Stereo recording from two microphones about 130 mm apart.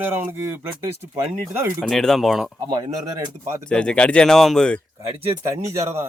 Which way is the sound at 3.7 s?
5° left (ahead or behind).